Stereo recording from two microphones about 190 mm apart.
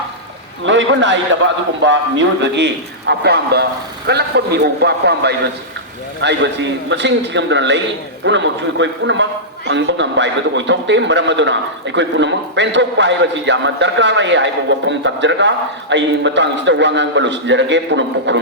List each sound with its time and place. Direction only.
0.6 s a man's voice: 80° right